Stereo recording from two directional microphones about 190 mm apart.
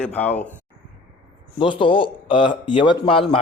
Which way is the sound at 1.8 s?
25° left (ahead or behind).